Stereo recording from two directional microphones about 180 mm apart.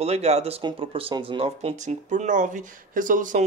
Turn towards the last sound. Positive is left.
turn(degrees=-45)  # may be behind; listen again after turning